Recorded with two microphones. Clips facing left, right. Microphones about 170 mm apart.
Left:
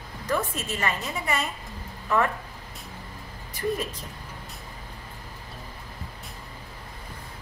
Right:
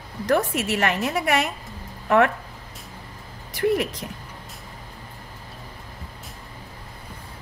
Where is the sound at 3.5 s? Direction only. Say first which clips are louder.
Right 7 dB; 75° right (ahead or behind).